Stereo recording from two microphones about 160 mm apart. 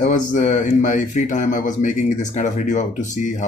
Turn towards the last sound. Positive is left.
turn(degrees=50)  # may be behind; listen again after turning